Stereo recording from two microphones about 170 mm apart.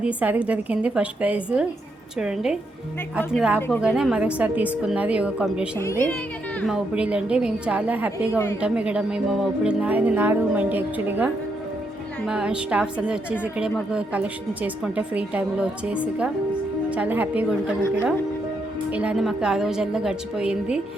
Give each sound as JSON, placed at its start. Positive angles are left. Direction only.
{"t": 0.0, "sound": "a woman's voice", "side_deg": -10}
{"t": 5.7, "sound": "a woman's voice", "side_deg": 15}
{"t": 6.7, "sound": "a woman's voice", "side_deg": -5}
{"t": 8.3, "sound": "a woman's voice", "side_deg": 15}
{"t": 8.6, "sound": "a woman's voice", "side_deg": -5}
{"t": 18.9, "sound": "a woman's voice", "side_deg": -5}